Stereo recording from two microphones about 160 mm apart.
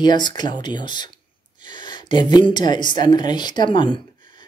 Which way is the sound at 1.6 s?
30° left (ahead or behind).